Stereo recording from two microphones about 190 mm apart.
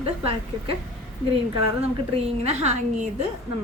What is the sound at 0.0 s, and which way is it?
Speech, 30° right (ahead or behind).